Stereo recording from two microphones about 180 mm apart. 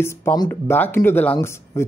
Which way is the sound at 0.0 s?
15° left (ahead or behind).